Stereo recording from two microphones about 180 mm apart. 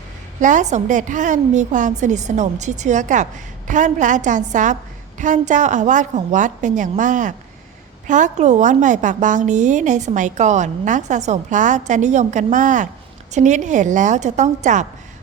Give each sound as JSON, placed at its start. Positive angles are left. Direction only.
{"t": 0.3, "sound": "a woman's voice", "side_deg": -45}